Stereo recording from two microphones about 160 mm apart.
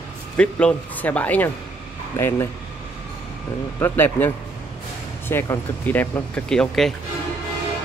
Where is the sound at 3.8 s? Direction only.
15° left (ahead or behind).